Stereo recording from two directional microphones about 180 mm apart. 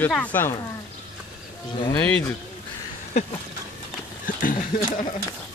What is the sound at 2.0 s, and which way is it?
Speech, 5° left (ahead or behind).